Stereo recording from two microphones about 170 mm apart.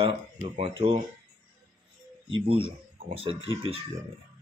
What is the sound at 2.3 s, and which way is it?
Speech, 30° right (ahead or behind).